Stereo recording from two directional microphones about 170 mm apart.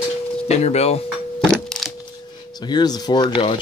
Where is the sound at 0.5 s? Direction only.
40° left (ahead or behind).